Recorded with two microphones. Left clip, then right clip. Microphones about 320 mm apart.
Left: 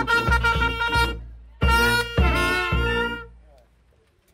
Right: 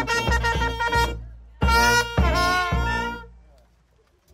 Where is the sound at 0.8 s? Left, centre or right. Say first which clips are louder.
Even; right.